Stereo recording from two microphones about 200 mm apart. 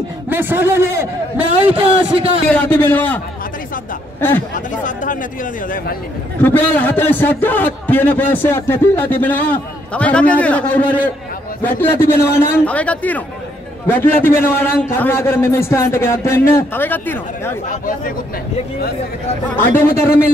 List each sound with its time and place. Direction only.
0.3 s a man's voice: 10° right (ahead or behind)
1.7 s speech: 30° right (ahead or behind)
2.5 s a man's voice: 10° left (ahead or behind)
4.6 s speech: 40° left (ahead or behind)
6.4 s a man's voice: 10° left (ahead or behind)
17.6 s speech: 45° left (ahead or behind)
19.5 s a man's voice: 10° left (ahead or behind)